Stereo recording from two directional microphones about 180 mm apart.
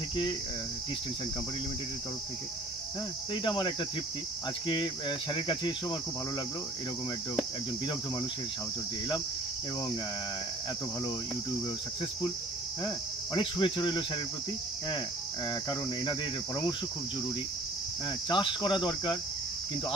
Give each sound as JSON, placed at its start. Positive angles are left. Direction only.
{"t": 3.4, "sound": "cricket", "side_deg": 25}
{"t": 12.8, "sound": "cricket", "side_deg": 25}
{"t": 15.7, "sound": "cricket", "side_deg": 25}
{"t": 18.3, "sound": "cricket", "side_deg": 25}